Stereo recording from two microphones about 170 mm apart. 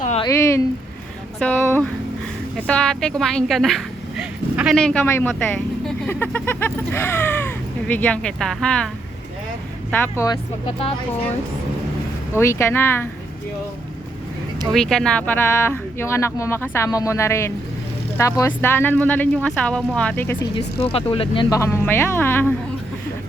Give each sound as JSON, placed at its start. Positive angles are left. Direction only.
{"t": 0.3, "sound": "speech", "side_deg": 15}
{"t": 9.9, "sound": "speech", "side_deg": 15}
{"t": 10.7, "sound": "speech", "side_deg": 35}
{"t": 12.4, "sound": "speech", "side_deg": 15}
{"t": 14.7, "sound": "speech", "side_deg": 5}
{"t": 20.8, "sound": "speech", "side_deg": 35}
{"t": 21.5, "sound": "speech", "side_deg": 15}